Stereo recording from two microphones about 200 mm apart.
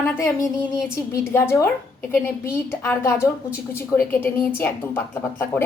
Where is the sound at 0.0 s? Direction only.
15° left (ahead or behind).